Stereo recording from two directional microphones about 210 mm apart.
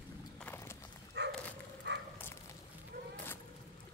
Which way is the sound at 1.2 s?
55° right (ahead or behind).